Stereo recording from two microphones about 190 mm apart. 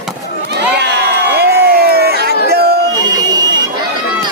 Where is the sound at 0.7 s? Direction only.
65° right (ahead or behind).